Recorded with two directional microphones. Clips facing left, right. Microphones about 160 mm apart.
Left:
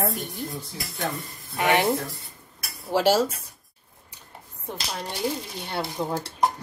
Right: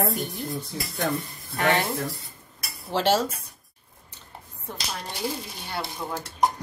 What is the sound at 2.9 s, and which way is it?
Speech, 10° left (ahead or behind).